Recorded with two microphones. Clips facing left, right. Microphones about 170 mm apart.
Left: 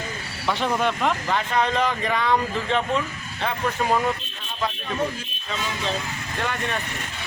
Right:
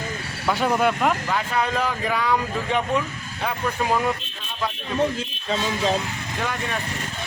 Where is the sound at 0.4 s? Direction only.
5° right (ahead or behind).